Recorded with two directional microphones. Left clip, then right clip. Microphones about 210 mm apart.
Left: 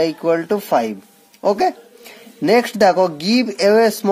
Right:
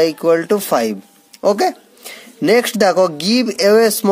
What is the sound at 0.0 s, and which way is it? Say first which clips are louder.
Speech: right 4 dB; 30° right (ahead or behind).